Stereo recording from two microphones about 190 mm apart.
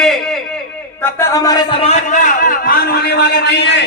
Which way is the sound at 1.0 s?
15° left (ahead or behind).